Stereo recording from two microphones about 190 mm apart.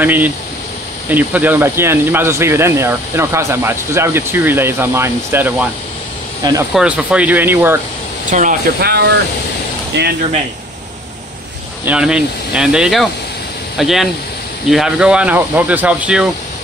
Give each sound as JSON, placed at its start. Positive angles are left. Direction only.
{"t": 0.0, "sound": "speech", "side_deg": -10}
{"t": 6.7, "sound": "speech", "side_deg": -5}
{"t": 8.3, "sound": "speech", "side_deg": -45}
{"t": 9.9, "sound": "speech", "side_deg": -65}
{"t": 11.8, "sound": "speech", "side_deg": -5}